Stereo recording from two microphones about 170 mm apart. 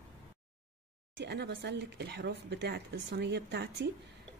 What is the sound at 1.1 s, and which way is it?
Speech, 80° right.